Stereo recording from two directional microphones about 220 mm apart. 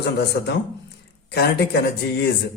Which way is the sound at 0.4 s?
45° left (ahead or behind).